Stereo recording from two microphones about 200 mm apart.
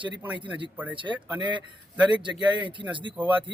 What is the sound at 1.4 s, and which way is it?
Speech, 25° right (ahead or behind).